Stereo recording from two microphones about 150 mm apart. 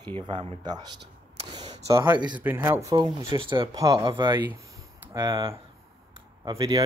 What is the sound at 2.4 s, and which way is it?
Speech, 15° right (ahead or behind).